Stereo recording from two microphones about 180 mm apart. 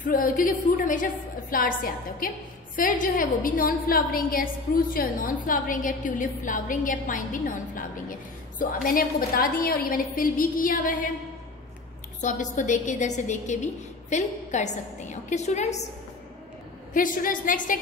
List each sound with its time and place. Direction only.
0.0 s a woman's voice: 50° left (ahead or behind)
12.2 s a woman's voice: 45° left (ahead or behind)
16.9 s a woman's voice: 50° left (ahead or behind)